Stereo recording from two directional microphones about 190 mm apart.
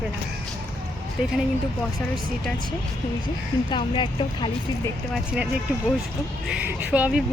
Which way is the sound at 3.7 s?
25° left (ahead or behind).